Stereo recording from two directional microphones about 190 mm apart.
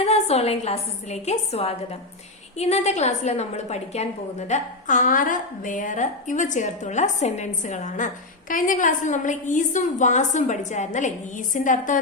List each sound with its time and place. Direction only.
0.0 s a woman's voice: 35° left (ahead or behind)